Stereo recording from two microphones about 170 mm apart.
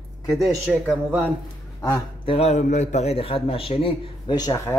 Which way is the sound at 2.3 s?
40° left (ahead or behind).